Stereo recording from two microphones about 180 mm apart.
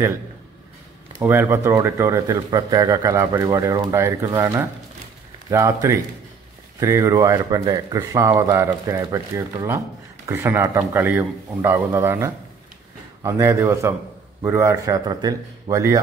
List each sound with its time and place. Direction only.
1.2 s a man's voice: 10° right (ahead or behind)